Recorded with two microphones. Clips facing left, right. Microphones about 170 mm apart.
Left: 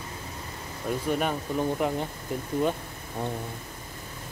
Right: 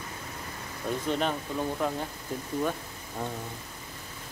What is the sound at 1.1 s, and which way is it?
Speech, 10° left (ahead or behind).